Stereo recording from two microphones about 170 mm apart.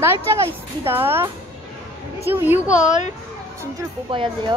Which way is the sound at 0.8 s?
15° right (ahead or behind).